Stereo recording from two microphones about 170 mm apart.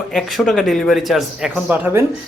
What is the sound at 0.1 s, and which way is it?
Speech, centre (ahead or behind).